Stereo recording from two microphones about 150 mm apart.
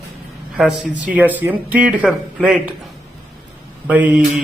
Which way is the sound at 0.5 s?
5° right (ahead or behind).